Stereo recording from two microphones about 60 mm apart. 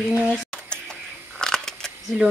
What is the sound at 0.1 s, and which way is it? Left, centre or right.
Speech, right.